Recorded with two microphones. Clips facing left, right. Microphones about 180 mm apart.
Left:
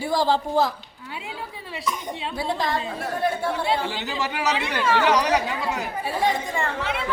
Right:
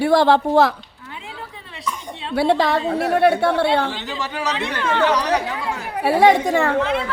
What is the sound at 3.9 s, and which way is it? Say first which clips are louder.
Speech: right 1 dB; 10° left (ahead or behind).